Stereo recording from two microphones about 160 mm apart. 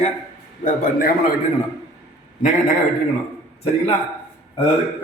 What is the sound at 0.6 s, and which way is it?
Speech, 65° left (ahead or behind).